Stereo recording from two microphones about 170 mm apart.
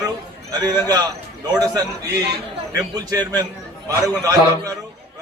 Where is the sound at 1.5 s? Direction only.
20° right (ahead or behind).